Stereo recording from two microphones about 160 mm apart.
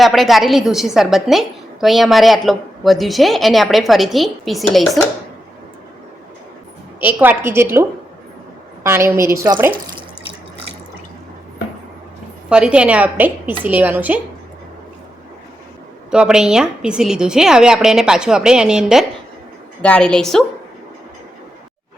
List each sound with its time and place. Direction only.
0.0 s a woman's voice: centre (ahead or behind)
7.0 s a woman's voice: 10° right (ahead or behind)
12.5 s a woman's voice: 5° right (ahead or behind)
16.0 s a woman's voice: 5° right (ahead or behind)
19.8 s a woman's voice: 5° left (ahead or behind)